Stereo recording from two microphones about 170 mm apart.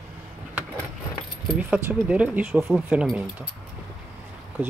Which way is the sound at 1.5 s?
5° right (ahead or behind).